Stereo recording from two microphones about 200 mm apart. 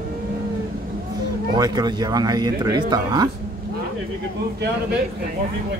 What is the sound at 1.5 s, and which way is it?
Speech, 20° right (ahead or behind).